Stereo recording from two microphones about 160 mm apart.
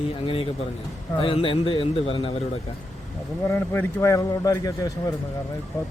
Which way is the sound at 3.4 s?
15° left (ahead or behind).